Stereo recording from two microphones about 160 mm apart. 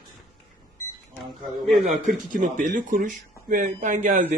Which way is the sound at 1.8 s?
55° right (ahead or behind).